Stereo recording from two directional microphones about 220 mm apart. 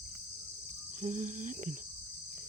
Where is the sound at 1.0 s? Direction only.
35° right (ahead or behind).